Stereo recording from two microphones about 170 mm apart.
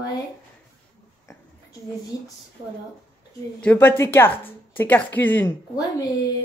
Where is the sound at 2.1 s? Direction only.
20° left (ahead or behind).